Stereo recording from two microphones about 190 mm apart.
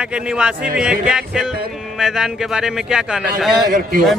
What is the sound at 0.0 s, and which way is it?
A man's voice, 5° right (ahead or behind).